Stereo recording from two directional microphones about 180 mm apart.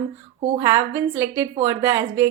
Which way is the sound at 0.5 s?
15° right (ahead or behind).